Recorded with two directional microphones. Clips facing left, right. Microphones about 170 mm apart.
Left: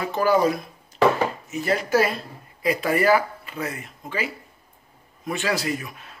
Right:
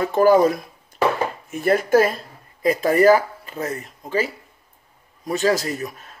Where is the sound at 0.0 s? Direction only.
45° right (ahead or behind).